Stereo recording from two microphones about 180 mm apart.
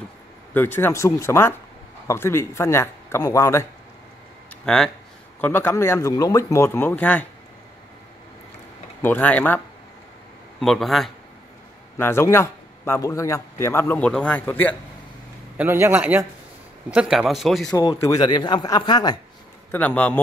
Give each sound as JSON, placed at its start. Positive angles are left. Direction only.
{"t": 0.6, "sound": "a man's voice", "side_deg": 10}
{"t": 4.6, "sound": "a man's voice", "side_deg": 0}
{"t": 9.0, "sound": "a man's voice", "side_deg": 10}
{"t": 10.6, "sound": "speech", "side_deg": 0}
{"t": 12.0, "sound": "a man's voice", "side_deg": 15}
{"t": 15.5, "sound": "a man's voice", "side_deg": -10}
{"t": 18.0, "sound": "a man's voice", "side_deg": 20}
{"t": 19.7, "sound": "a man's voice", "side_deg": 10}